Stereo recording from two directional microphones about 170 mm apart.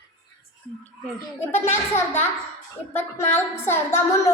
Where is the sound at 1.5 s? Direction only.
40° left (ahead or behind).